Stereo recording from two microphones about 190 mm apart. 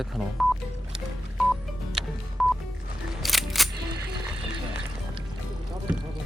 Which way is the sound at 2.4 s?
Centre (ahead or behind).